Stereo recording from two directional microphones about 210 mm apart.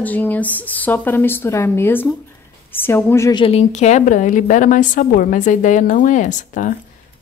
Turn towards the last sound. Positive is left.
turn(degrees=35)  # may be behind; listen again after turning